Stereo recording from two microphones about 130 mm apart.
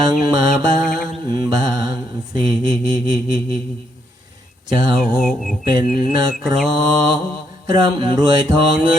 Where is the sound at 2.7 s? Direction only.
35° right (ahead or behind).